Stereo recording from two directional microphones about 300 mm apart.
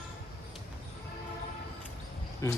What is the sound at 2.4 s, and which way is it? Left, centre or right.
Speech, centre.